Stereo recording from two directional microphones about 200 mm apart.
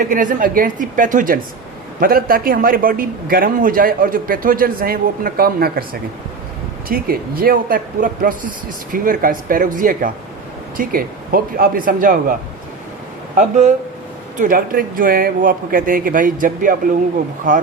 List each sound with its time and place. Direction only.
0.0 s a woman's voice: 40° right (ahead or behind)
14.3 s a man's voice: 45° right (ahead or behind)